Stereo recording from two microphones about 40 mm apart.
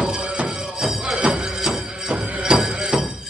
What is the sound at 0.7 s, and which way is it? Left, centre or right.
Music, centre.